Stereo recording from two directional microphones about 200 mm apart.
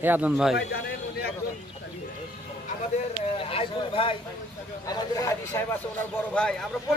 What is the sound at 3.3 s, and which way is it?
Speech, 25° left (ahead or behind).